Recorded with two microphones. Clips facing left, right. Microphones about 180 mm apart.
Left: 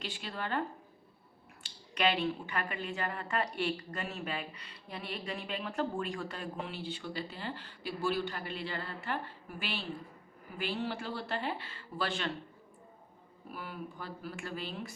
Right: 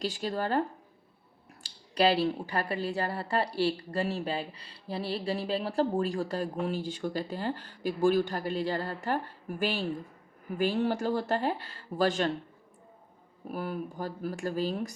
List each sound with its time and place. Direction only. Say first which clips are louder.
0.0 s a woman's voice: right 9 dB; 40° right (ahead or behind)
1.6 s a woman's voice: right 6 dB; 35° right (ahead or behind)
13.5 s a woman's voice: right 8 dB; 40° right (ahead or behind)